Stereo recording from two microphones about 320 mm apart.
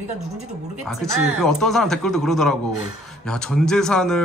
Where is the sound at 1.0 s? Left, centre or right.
Centre.